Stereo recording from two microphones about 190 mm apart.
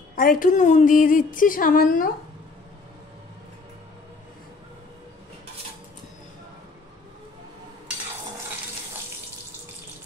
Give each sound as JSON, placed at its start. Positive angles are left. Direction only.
{"t": 0.1, "sound": "speech", "side_deg": 45}